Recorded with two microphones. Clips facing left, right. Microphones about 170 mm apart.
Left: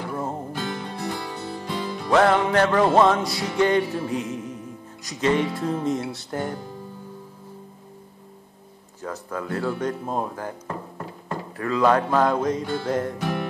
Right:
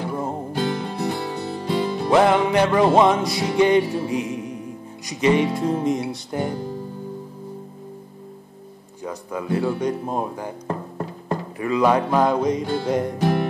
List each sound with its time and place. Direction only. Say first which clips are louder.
0.1 s music: right 3 dB; 15° right (ahead or behind)
9.0 s music: right 2 dB; 15° right (ahead or behind)
10.7 s music: right 5 dB; 30° right (ahead or behind)
11.5 s music: right 1 dB; 10° right (ahead or behind)
13.2 s music: right 6 dB; 30° right (ahead or behind)